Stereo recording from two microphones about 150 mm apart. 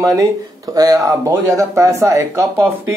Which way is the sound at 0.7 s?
25° right (ahead or behind).